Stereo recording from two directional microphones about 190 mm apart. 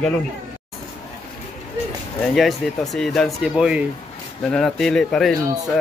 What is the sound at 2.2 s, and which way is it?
Speech, centre (ahead or behind).